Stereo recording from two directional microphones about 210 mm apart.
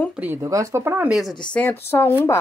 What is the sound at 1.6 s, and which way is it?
Speech, 10° left (ahead or behind).